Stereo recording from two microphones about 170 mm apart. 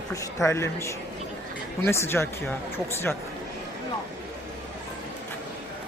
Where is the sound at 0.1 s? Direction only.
20° left (ahead or behind).